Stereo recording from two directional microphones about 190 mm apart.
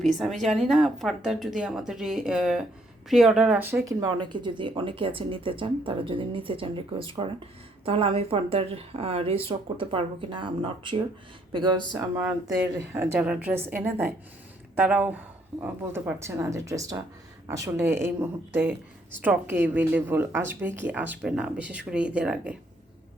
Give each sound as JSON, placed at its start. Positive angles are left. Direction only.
{"t": 0.0, "sound": "speech", "side_deg": 0}